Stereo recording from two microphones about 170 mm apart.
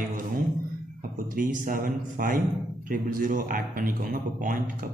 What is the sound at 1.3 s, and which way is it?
A man's voice, 55° right (ahead or behind).